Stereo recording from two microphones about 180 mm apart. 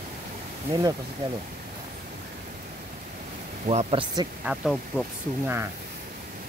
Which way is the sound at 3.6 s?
35° right (ahead or behind).